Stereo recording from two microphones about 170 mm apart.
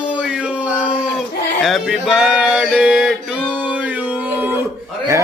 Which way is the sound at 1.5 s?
Centre (ahead or behind).